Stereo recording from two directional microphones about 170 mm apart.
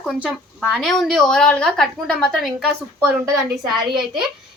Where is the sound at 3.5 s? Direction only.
Centre (ahead or behind).